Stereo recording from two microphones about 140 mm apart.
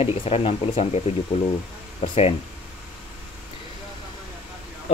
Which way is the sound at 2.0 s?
45° left (ahead or behind).